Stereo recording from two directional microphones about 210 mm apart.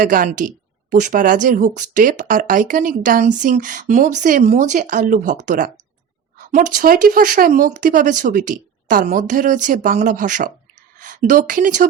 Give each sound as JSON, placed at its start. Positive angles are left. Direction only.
{"t": 0.0, "sound": "a woman's voice", "side_deg": -40}